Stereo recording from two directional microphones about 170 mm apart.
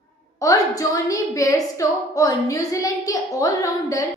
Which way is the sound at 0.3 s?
20° left (ahead or behind).